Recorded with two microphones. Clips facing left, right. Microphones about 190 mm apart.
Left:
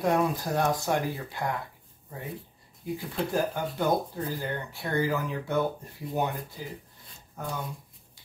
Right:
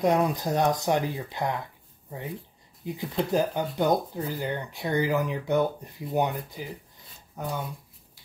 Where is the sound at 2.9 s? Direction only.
20° right (ahead or behind).